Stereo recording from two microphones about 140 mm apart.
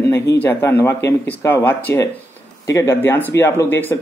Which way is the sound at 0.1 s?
20° left (ahead or behind).